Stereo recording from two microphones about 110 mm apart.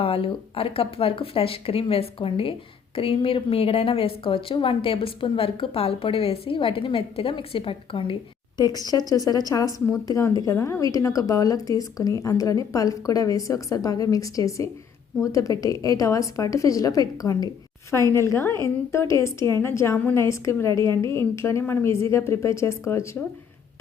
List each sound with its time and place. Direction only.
0.0 s speech: 60° left (ahead or behind)
8.5 s a woman's voice: 35° left (ahead or behind)